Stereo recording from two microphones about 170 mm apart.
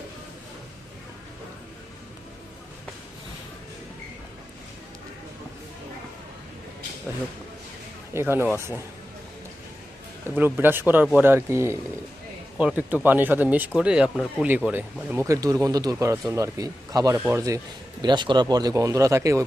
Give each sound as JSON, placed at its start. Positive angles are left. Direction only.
{"t": 8.1, "sound": "speech", "side_deg": -15}
{"t": 10.3, "sound": "speech", "side_deg": -10}